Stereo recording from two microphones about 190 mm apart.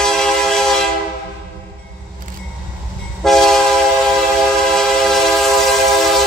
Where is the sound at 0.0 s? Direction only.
Centre (ahead or behind).